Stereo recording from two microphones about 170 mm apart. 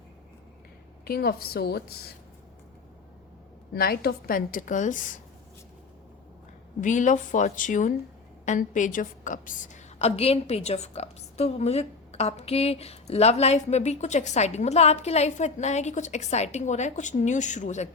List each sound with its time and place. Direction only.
1.0 s a woman's voice: 65° left (ahead or behind)
3.7 s a woman's voice: 65° left (ahead or behind); by 5.2 s 50° left (ahead or behind)
6.8 s a woman's voice: 45° left (ahead or behind)